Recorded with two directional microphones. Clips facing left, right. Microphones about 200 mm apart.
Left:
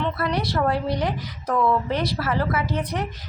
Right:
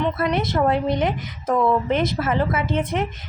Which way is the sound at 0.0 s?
20° right (ahead or behind).